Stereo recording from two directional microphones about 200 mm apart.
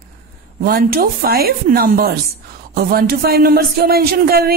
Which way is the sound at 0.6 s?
50° right (ahead or behind).